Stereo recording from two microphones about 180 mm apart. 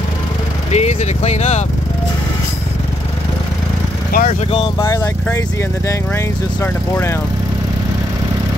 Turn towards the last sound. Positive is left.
turn(degrees=15)  # may be behind; listen again after turning